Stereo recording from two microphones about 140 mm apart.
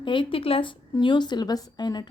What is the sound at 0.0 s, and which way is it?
A woman's voice, 35° left (ahead or behind).